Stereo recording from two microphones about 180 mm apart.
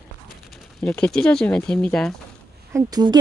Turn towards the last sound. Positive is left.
turn(degrees=-20)  # may be behind; listen again after turning